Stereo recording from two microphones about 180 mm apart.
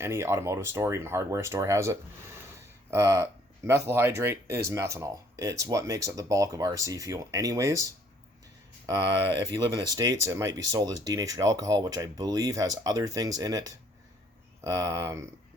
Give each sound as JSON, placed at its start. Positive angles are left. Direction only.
{"t": 0.0, "sound": "speech", "side_deg": -15}
{"t": 8.9, "sound": "speech", "side_deg": -30}